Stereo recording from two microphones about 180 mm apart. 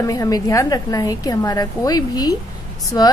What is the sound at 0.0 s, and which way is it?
A woman's voice, 20° left (ahead or behind).